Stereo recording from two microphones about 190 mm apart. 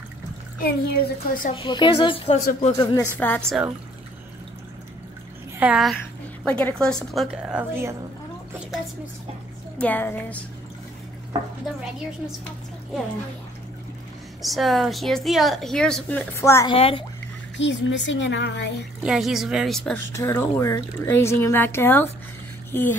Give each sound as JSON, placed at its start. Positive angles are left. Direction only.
{"t": 0.6, "sound": "a woman's voice", "side_deg": 55}
{"t": 1.5, "sound": "speech", "side_deg": 25}
{"t": 3.2, "sound": "a woman's voice", "side_deg": 5}
{"t": 5.6, "sound": "a woman's voice", "side_deg": -5}
{"t": 9.8, "sound": "speech", "side_deg": 10}
{"t": 14.4, "sound": "a woman's voice", "side_deg": 0}
{"t": 16.7, "sound": "speech", "side_deg": 30}
{"t": 17.6, "sound": "speech", "side_deg": 70}
{"t": 19.0, "sound": "a woman's voice", "side_deg": 0}
{"t": 20.2, "sound": "speech", "side_deg": 15}